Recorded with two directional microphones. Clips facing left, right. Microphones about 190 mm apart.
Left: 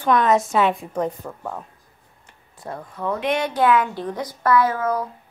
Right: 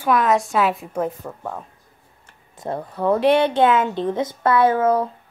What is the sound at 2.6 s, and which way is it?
A woman's voice, 30° right (ahead or behind).